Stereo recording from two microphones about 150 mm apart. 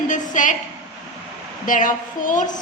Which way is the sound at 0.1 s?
60° left (ahead or behind).